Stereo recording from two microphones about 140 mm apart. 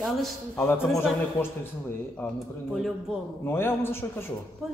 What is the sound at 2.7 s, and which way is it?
Speech, centre (ahead or behind).